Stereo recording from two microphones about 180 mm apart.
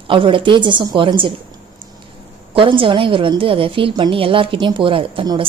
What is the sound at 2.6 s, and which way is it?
A woman's voice, 30° right (ahead or behind).